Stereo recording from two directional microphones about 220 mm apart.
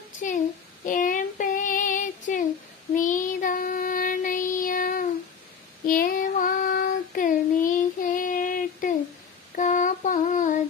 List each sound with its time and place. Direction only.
0.2 s a child's voice: 35° left (ahead or behind)
0.9 s child singing: 35° left (ahead or behind)
9.6 s a sound: 35° left (ahead or behind)